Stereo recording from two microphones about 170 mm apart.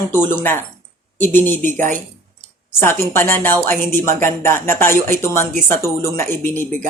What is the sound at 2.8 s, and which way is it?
Speech, 15° left (ahead or behind).